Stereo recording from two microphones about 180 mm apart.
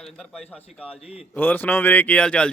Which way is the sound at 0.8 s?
30° left (ahead or behind).